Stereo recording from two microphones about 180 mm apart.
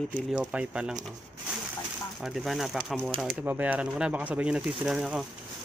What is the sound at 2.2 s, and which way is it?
Speech, centre (ahead or behind).